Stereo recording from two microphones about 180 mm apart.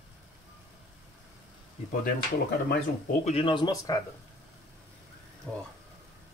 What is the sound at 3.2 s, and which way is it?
Speech, 30° left (ahead or behind).